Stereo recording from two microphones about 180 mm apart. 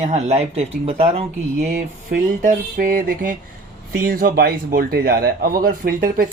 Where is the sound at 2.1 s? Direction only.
50° right (ahead or behind).